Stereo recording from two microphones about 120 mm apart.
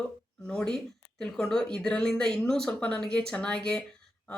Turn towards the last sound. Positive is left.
turn(degrees=10)  # may be behind; listen again after turning